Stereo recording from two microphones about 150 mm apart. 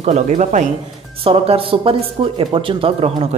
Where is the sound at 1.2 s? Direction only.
40° right (ahead or behind).